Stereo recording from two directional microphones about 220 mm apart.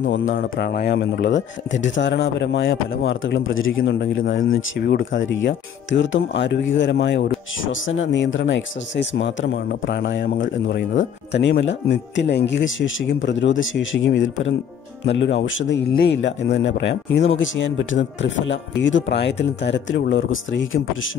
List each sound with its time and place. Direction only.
0.1 s speech: 60° left (ahead or behind)
0.4 s speech: 45° left (ahead or behind); by 4.8 s 65° left (ahead or behind)
4.8 s speech: 45° left (ahead or behind)
5.2 s speech: 55° left (ahead or behind)